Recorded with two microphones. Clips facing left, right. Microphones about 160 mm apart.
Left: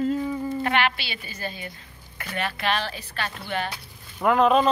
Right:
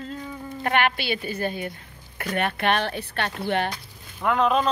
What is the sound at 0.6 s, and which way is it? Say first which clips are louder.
A woman's voice: right 5 dB; 50° right (ahead or behind).